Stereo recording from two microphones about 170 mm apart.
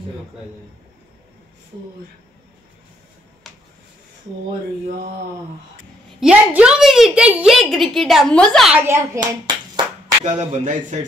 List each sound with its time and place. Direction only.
3.4 s a sound: centre (ahead or behind)
6.1 s a woman's voice: 5° right (ahead or behind)
8.7 s a child's voice: 15° right (ahead or behind)
10.2 s speech: 45° right (ahead or behind)